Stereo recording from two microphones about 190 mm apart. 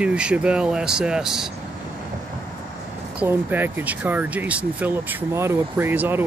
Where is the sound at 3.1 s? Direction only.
10° right (ahead or behind).